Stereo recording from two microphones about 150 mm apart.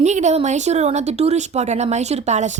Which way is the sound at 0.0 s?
50° right (ahead or behind).